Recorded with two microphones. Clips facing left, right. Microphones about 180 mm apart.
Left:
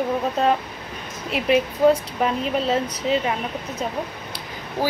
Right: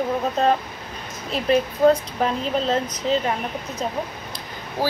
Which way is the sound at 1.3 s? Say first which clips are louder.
Even; 10° left (ahead or behind).